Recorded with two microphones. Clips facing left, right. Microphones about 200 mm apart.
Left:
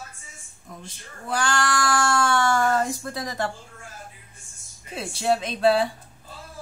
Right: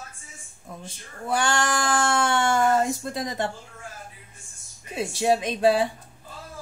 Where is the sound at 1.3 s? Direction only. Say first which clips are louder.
Right 1 dB; 25° right (ahead or behind).